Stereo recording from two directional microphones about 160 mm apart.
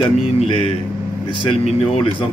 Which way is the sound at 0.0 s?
30° left (ahead or behind).